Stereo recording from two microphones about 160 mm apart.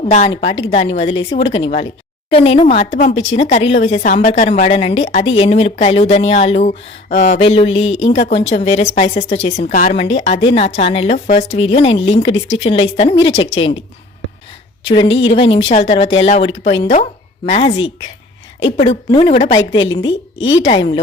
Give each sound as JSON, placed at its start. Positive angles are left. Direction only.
{"t": 0.0, "sound": "a woman's voice", "side_deg": 45}
{"t": 9.9, "sound": "speech", "side_deg": 40}
{"t": 14.8, "sound": "a woman's voice", "side_deg": 30}
{"t": 18.8, "sound": "speech", "side_deg": 40}
{"t": 19.5, "sound": "speech", "side_deg": 30}